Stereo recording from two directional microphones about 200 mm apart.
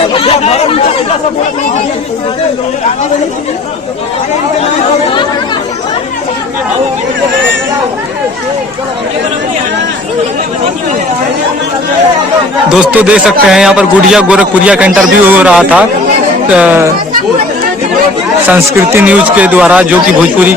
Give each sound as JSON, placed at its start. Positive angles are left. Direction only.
{"t": 0.1, "sound": "speech", "side_deg": 30}
{"t": 12.6, "sound": "a man's voice", "side_deg": -5}
{"t": 18.4, "sound": "speech", "side_deg": -10}